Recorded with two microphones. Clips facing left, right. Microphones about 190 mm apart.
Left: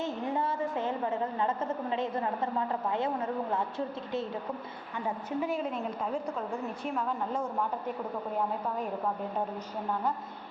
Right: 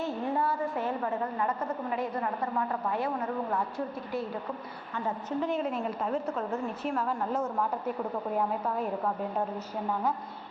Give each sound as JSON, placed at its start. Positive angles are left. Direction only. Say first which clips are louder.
{"t": 0.0, "sound": "a woman's voice", "louder": "right 2 dB", "side_deg": 20}
{"t": 4.9, "sound": "a woman's voice", "louder": "right 1 dB", "side_deg": 10}
{"t": 5.5, "sound": "a woman's voice", "louder": "right 2 dB", "side_deg": 0}